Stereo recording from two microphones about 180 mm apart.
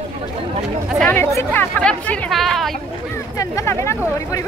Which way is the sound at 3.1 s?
20° left (ahead or behind).